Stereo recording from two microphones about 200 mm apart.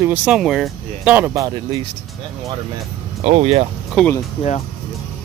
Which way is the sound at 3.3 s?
30° right (ahead or behind).